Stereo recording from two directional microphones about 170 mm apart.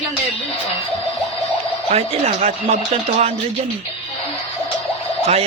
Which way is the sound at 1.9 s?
40° right (ahead or behind).